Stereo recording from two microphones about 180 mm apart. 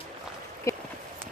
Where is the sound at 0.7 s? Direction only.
15° left (ahead or behind).